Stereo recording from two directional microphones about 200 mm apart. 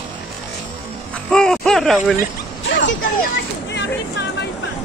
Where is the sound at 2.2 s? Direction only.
65° left (ahead or behind).